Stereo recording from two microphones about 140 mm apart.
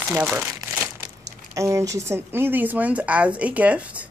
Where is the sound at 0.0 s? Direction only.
15° right (ahead or behind).